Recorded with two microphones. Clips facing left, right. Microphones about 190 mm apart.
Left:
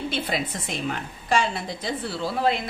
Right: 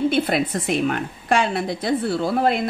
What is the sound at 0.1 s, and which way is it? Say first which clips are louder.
Speech: right 8 dB; 60° right (ahead or behind).